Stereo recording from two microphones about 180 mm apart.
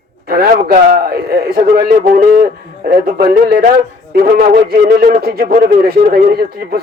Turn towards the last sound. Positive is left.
turn(degrees=-55)  # may be behind; listen again after turning